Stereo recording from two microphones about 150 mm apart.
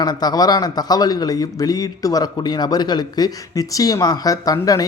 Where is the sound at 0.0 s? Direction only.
25° left (ahead or behind).